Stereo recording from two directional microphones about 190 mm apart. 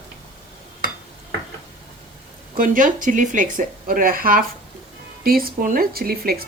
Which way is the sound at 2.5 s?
45° right (ahead or behind).